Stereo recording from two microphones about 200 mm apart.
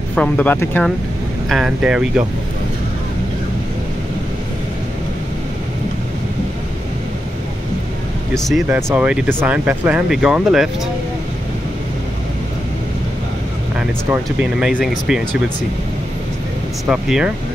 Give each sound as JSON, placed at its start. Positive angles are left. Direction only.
{"t": 0.1, "sound": "speech", "side_deg": 5}
{"t": 1.5, "sound": "speech", "side_deg": -5}
{"t": 8.4, "sound": "speech", "side_deg": 0}
{"t": 8.6, "sound": "speech", "side_deg": -10}
{"t": 13.7, "sound": "speech", "side_deg": -5}
{"t": 16.8, "sound": "speech", "side_deg": -5}